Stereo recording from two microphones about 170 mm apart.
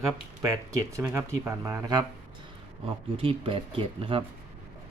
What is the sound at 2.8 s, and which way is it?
Speech, 35° right (ahead or behind).